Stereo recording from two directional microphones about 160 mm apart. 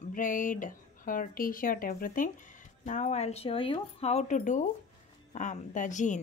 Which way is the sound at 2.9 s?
45° left (ahead or behind).